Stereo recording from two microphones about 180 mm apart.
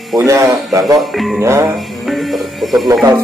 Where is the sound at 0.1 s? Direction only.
15° right (ahead or behind).